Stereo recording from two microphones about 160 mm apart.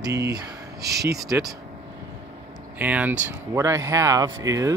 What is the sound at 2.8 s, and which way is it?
Speech, 10° right (ahead or behind).